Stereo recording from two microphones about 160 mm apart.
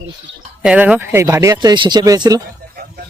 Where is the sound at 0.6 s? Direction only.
5° right (ahead or behind); by 2.4 s 25° right (ahead or behind).